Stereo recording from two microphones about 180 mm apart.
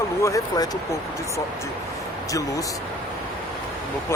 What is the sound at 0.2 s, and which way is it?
Speech, 15° left (ahead or behind).